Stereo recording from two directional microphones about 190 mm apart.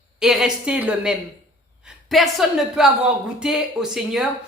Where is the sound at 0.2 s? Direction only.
Centre (ahead or behind).